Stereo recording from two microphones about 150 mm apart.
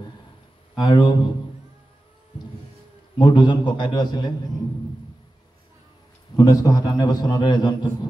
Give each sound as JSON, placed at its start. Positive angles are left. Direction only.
{"t": 0.7, "sound": "a man's voice", "side_deg": 30}
{"t": 3.2, "sound": "a man's voice", "side_deg": 30}
{"t": 6.3, "sound": "a man's voice", "side_deg": 25}